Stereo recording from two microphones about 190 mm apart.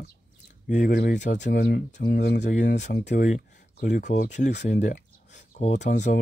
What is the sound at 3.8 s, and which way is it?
Speech, 40° left (ahead or behind).